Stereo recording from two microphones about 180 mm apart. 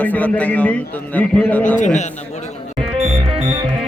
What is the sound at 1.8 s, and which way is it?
Speech, 40° left (ahead or behind).